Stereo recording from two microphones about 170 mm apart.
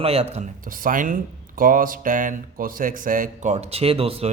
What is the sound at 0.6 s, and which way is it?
Speech, 55° right (ahead or behind).